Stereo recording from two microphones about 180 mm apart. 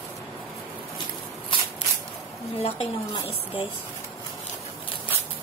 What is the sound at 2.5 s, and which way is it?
A woman's voice, 30° left (ahead or behind).